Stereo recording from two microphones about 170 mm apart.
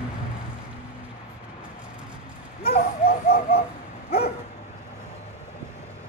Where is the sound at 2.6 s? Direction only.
65° left (ahead or behind).